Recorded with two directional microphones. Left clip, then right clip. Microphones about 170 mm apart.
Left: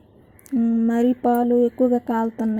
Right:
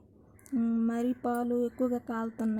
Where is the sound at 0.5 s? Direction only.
10° left (ahead or behind).